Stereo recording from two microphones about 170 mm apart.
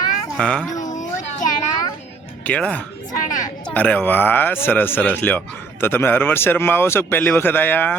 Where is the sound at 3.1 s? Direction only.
50° left (ahead or behind).